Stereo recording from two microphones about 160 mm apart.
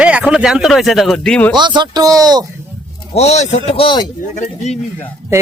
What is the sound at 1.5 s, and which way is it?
Speech, 30° right (ahead or behind).